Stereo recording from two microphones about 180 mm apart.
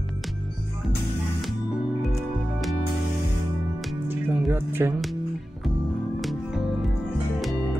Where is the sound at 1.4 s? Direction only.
Centre (ahead or behind).